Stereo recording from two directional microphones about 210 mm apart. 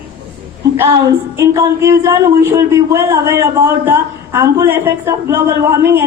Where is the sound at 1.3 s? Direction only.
15° right (ahead or behind).